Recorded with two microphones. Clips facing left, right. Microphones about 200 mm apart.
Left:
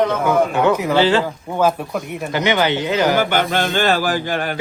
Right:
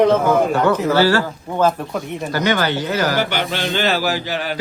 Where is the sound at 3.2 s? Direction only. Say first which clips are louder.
Left 3 dB; 50° left (ahead or behind).